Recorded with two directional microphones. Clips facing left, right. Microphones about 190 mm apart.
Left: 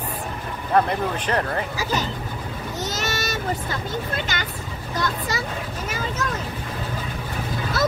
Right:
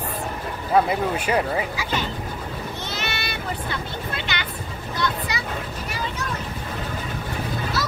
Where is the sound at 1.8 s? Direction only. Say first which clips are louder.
Left 2 dB; 40° left (ahead or behind).